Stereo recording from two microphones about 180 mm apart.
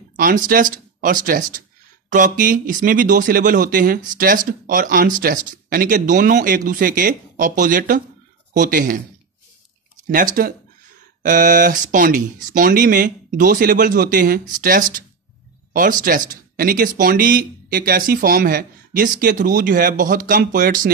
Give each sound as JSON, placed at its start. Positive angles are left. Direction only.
{"t": 0.1, "sound": "speech", "side_deg": -50}
{"t": 10.0, "sound": "speech", "side_deg": -50}